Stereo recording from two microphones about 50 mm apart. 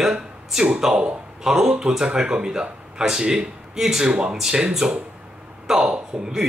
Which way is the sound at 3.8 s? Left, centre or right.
Centre.